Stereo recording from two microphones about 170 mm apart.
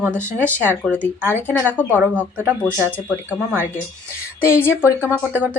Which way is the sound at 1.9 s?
10° right (ahead or behind).